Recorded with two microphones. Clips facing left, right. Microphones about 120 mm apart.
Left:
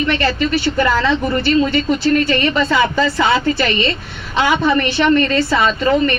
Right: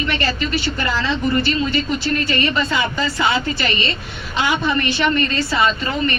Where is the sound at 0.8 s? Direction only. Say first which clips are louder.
Left 7 dB; 55° left (ahead or behind).